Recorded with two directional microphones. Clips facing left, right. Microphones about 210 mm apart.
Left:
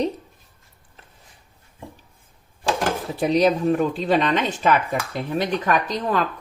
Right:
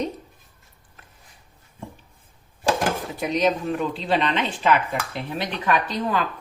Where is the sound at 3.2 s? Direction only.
35° left (ahead or behind).